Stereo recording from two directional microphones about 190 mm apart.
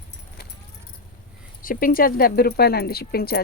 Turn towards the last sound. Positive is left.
turn(degrees=55)  # may be behind; listen again after turning